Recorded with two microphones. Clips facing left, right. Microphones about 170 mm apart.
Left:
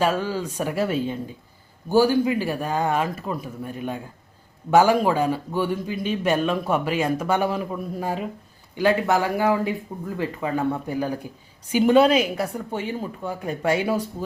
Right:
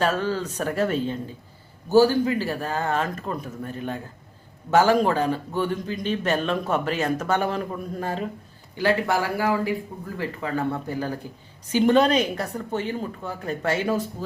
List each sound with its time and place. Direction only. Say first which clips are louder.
0.0 s a man's voice: left 1 dB; 10° left (ahead or behind)